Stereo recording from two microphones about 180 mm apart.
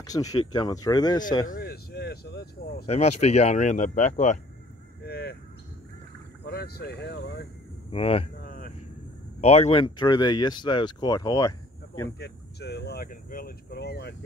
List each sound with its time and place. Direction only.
0.0 s speech: 20° left (ahead or behind)
1.5 s a sound: 60° left (ahead or behind)
2.9 s speech: 35° left (ahead or behind)
5.0 s a sound: 60° left (ahead or behind)
6.4 s speech: 60° left (ahead or behind)
7.9 s speech: 35° left (ahead or behind)
8.4 s a sound: 50° left (ahead or behind)
9.4 s speech: 35° left (ahead or behind); by 12.1 s 20° left (ahead or behind)
12.2 s speech: 65° left (ahead or behind)